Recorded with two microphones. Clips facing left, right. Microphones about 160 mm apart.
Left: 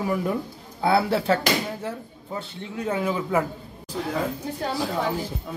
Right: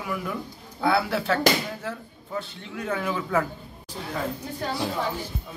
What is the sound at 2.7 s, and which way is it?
Speech, 20° left (ahead or behind).